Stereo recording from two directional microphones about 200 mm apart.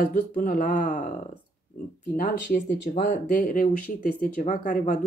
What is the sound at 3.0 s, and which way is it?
Speech, 40° left (ahead or behind).